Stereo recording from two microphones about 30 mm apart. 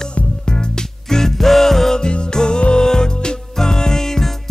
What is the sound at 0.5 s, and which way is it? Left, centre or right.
Music, left.